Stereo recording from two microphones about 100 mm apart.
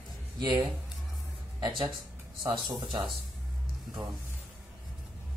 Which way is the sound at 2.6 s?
50° right (ahead or behind).